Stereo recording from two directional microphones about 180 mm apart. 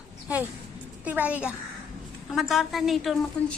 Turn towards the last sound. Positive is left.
turn(degrees=0)  # may be behind; listen again after turning